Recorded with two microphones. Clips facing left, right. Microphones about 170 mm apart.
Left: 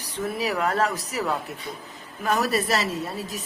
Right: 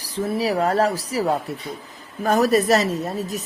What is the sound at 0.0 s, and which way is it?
A man's voice, 30° right (ahead or behind).